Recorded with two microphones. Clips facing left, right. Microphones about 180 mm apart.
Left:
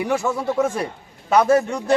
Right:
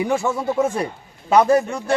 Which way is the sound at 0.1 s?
5° right (ahead or behind).